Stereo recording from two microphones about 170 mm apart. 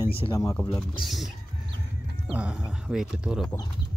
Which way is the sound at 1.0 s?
Centre (ahead or behind).